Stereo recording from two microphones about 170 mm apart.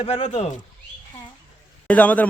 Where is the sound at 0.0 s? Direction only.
35° left (ahead or behind).